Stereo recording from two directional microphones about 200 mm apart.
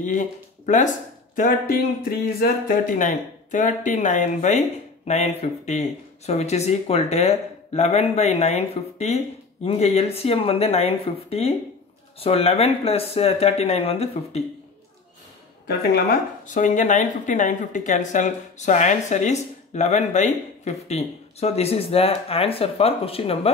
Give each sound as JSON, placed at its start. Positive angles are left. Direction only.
{"t": 0.0, "sound": "speech", "side_deg": 40}
{"t": 15.6, "sound": "speech", "side_deg": 50}